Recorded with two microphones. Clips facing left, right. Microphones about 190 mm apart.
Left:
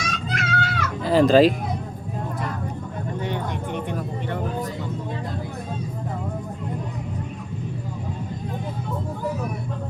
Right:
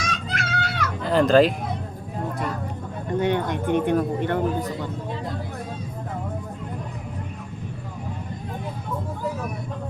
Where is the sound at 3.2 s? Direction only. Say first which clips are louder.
Right 7 dB; 60° right (ahead or behind).